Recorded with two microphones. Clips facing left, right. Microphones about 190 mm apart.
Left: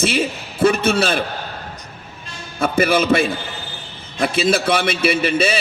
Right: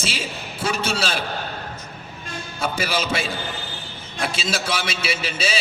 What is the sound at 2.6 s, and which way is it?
A man's voice, 55° left (ahead or behind).